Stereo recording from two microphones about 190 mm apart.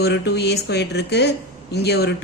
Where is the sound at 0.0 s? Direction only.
60° left (ahead or behind).